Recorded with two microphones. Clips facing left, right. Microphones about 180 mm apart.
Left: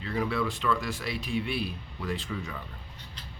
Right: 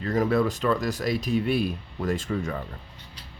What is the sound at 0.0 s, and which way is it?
Speech, 45° right (ahead or behind).